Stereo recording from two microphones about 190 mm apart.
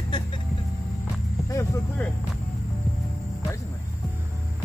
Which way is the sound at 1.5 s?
15° left (ahead or behind).